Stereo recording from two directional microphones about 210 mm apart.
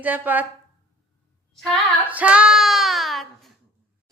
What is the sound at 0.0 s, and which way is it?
Speech, 10° right (ahead or behind).